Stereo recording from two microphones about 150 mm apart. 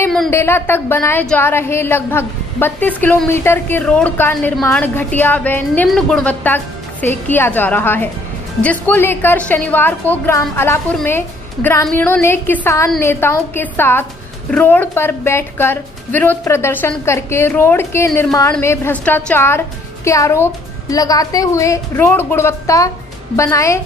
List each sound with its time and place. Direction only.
0.3 s a woman's voice: 15° left (ahead or behind)